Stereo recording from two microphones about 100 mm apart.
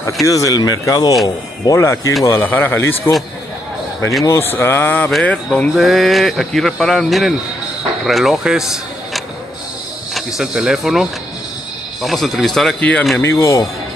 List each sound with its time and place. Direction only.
0.3 s speech: 35° left (ahead or behind)
4.2 s speech: 25° left (ahead or behind)
5.8 s a man's voice: centre (ahead or behind)
10.1 s a man's voice: 5° right (ahead or behind)
13.2 s speech: 30° left (ahead or behind)